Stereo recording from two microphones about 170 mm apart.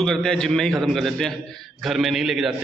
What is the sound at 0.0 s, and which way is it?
A man's voice, 5° left (ahead or behind).